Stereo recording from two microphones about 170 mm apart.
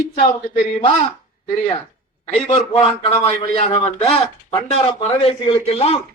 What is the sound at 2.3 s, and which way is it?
A man's voice, 40° left (ahead or behind).